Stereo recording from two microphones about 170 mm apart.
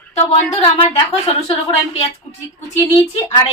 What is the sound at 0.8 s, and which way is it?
A woman's voice, 35° left (ahead or behind).